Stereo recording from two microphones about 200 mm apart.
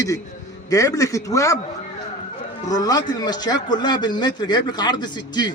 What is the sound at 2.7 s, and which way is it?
Speech, 20° left (ahead or behind).